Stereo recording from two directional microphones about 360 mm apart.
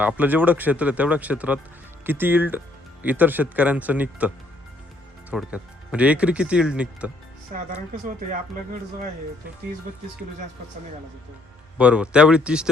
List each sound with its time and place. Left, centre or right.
0.0 s speech: centre
5.3 s speech: centre
7.5 s speech: right
11.8 s speech: centre